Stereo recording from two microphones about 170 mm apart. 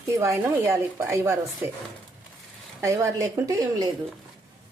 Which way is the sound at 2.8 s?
15° right (ahead or behind).